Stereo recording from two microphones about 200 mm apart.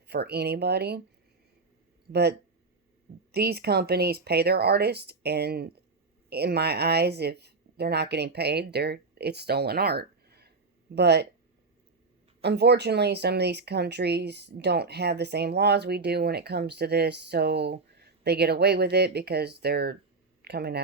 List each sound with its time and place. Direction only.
0.1 s speech: 55° right (ahead or behind)
3.3 s speech: 50° right (ahead or behind)
12.4 s speech: 55° right (ahead or behind)